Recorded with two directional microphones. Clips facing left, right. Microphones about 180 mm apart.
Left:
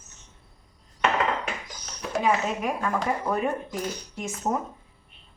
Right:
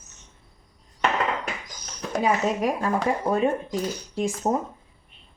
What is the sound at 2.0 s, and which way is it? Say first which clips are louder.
Speech: right 1 dB; 35° right (ahead or behind).